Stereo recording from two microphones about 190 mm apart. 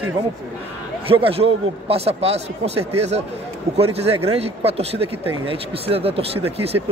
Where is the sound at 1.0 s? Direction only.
30° right (ahead or behind).